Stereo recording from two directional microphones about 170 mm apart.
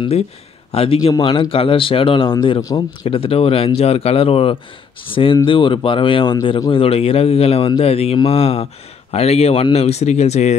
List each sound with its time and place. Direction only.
0.7 s a man's voice: 35° left (ahead or behind)